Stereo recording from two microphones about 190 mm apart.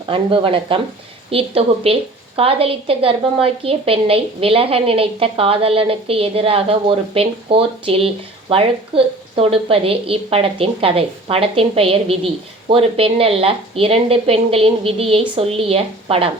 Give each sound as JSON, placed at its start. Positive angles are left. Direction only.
{"t": 0.0, "sound": "a woman's voice", "side_deg": -30}